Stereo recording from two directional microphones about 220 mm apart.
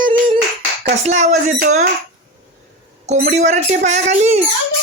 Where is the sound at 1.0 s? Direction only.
30° right (ahead or behind).